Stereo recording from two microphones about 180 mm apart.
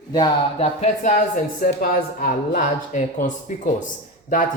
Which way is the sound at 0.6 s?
40° left (ahead or behind).